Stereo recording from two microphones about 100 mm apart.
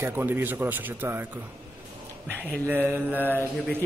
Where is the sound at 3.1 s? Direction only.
20° left (ahead or behind).